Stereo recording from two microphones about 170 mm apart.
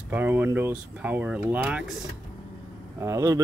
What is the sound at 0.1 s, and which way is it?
Speech, 10° right (ahead or behind).